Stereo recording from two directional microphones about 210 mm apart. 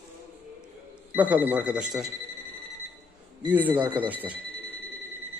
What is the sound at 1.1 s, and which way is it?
Speech, 5° right (ahead or behind).